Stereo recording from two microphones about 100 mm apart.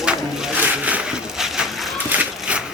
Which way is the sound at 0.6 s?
15° right (ahead or behind).